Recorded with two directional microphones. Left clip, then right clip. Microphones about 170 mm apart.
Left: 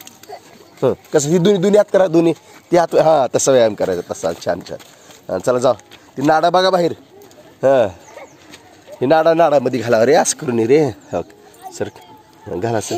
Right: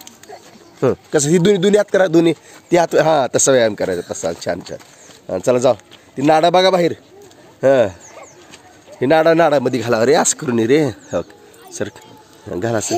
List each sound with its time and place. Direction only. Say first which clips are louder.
0.7 s a man's voice: left 1 dB; 25° right (ahead or behind); by 8.0 s 5° right (ahead or behind)
9.0 s a man's voice: even; centre (ahead or behind)
12.4 s a man's voice: even; 10° right (ahead or behind)